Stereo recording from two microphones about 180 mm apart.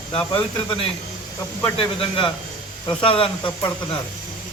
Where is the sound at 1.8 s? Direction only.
30° left (ahead or behind).